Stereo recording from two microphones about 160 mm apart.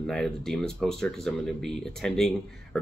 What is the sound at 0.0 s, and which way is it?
Speech, 5° left (ahead or behind).